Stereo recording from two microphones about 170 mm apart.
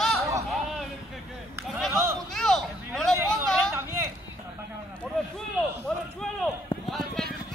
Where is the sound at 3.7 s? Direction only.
15° right (ahead or behind).